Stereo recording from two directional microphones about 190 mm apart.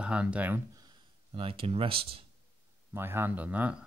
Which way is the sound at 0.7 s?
25° right (ahead or behind).